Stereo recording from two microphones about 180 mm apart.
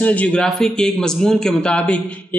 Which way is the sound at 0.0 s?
10° left (ahead or behind).